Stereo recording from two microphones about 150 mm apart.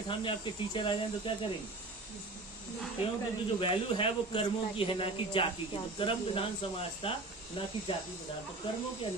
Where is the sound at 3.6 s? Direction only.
35° left (ahead or behind).